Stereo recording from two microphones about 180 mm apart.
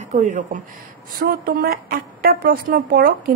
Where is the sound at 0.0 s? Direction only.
45° right (ahead or behind).